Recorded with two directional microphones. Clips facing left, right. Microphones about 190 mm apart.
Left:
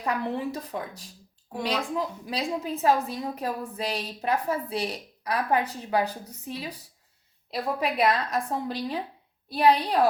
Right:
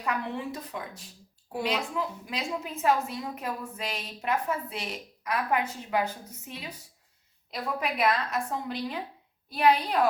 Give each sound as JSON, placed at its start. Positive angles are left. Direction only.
{"t": 0.0, "sound": "a woman's voice", "side_deg": 35}